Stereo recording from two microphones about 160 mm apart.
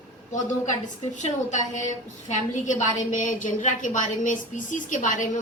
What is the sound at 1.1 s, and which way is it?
A woman's voice, 50° left (ahead or behind).